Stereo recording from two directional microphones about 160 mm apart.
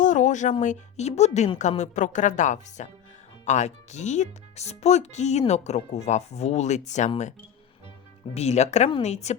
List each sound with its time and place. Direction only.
0.0 s speech: 50° left (ahead or behind)
8.3 s speech: 45° left (ahead or behind)